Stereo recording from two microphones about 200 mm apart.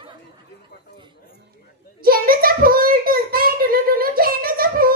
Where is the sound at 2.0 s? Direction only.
45° right (ahead or behind).